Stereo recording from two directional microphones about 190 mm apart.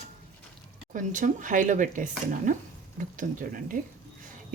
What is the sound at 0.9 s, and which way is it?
Speech, 45° right (ahead or behind).